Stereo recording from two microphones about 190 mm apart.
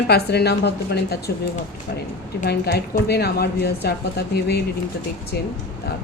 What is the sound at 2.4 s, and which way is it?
A woman's voice, 60° left (ahead or behind).